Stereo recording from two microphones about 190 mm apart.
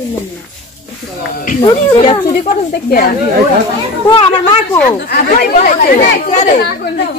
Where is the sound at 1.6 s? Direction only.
30° left (ahead or behind).